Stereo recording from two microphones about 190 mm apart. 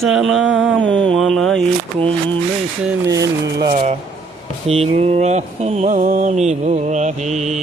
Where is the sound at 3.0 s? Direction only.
20° right (ahead or behind).